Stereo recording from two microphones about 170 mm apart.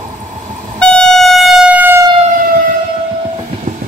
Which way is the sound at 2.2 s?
55° right (ahead or behind).